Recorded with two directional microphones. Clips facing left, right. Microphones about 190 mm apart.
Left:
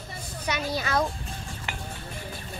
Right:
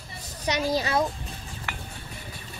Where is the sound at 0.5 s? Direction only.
35° right (ahead or behind).